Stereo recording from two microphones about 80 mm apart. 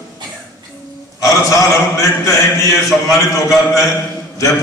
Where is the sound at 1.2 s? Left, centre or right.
Left.